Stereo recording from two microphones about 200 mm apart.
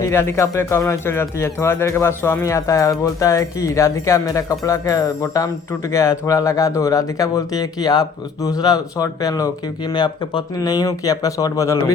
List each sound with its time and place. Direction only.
0.0 s speech: 15° left (ahead or behind)